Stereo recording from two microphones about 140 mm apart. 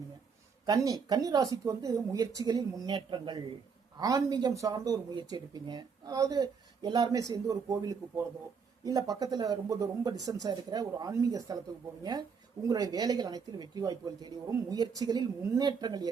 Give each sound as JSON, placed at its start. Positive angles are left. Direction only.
{"t": 0.6, "sound": "speech", "side_deg": -25}
{"t": 12.6, "sound": "speech", "side_deg": -25}